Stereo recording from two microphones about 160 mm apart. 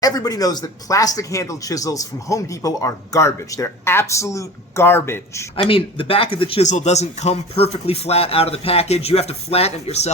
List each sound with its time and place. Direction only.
0.0 s speech: 25° left (ahead or behind)
5.6 s speech: 35° left (ahead or behind)
6.7 s speech: 45° left (ahead or behind)